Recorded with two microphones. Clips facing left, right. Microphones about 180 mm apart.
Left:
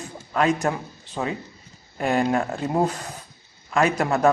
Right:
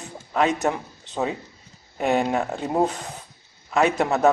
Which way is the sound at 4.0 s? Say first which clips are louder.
Right 1 dB; 20° right (ahead or behind).